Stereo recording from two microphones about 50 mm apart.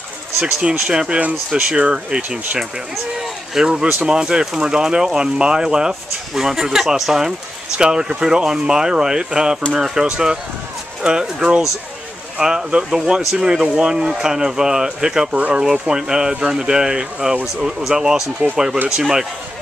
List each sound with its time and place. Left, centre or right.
0.4 s speech: centre
3.6 s speech: right
15.3 s speech: right
15.6 s speech: centre